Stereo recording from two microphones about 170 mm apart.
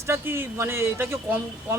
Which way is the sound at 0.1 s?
15° right (ahead or behind).